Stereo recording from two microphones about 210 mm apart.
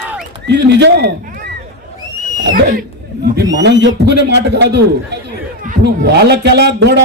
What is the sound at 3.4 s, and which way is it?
Speech, 15° right (ahead or behind).